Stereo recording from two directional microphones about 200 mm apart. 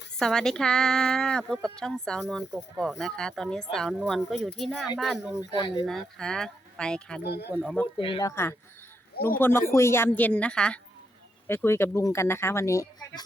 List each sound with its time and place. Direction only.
0.2 s speech: 5° left (ahead or behind)
5.4 s speech: 20° left (ahead or behind)
5.8 s speech: centre (ahead or behind)
7.2 s speech: 55° left (ahead or behind)
7.5 s speech: centre (ahead or behind)
7.9 s speech: 25° left (ahead or behind)
9.4 s speech: 10° left (ahead or behind)